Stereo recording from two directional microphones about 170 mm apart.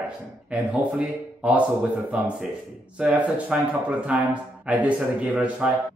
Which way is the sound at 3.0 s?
5° right (ahead or behind).